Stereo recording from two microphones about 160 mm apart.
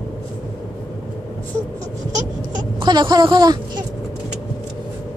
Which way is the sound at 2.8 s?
30° right (ahead or behind).